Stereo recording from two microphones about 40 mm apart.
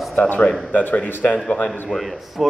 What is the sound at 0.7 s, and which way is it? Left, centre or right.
Speech, left.